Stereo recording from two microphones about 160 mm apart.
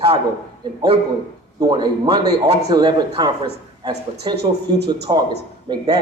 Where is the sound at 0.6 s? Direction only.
30° right (ahead or behind).